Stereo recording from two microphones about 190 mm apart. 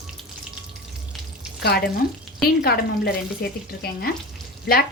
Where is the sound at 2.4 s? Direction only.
55° left (ahead or behind).